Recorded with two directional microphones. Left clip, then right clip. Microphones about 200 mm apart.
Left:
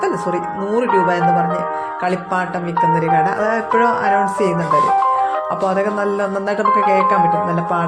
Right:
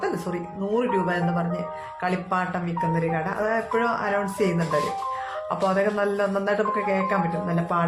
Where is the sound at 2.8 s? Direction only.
25° left (ahead or behind).